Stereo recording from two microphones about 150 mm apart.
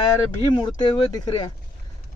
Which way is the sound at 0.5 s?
25° left (ahead or behind).